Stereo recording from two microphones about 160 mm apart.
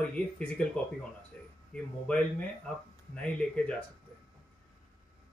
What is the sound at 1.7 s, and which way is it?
A man's voice, 5° left (ahead or behind).